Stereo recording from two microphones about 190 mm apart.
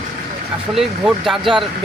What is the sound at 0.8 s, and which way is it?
Speech, centre (ahead or behind).